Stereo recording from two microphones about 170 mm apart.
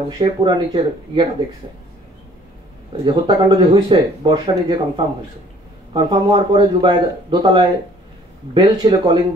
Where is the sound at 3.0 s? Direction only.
25° right (ahead or behind).